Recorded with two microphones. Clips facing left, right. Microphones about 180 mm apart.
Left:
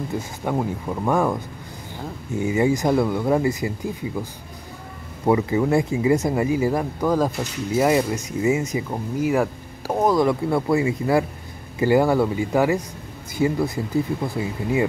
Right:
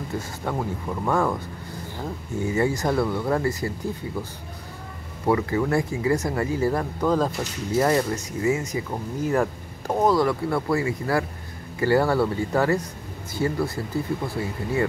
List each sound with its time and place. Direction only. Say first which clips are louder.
0.4 s speech: left 5 dB; 15° left (ahead or behind)
9.2 s speech: left 2 dB; 5° left (ahead or behind)